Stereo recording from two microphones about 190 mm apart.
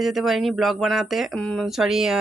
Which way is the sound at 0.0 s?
Centre (ahead or behind).